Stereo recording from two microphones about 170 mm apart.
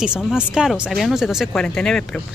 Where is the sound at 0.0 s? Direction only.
5° right (ahead or behind).